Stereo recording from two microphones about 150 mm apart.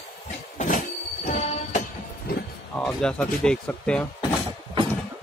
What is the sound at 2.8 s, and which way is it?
Speech, 5° left (ahead or behind).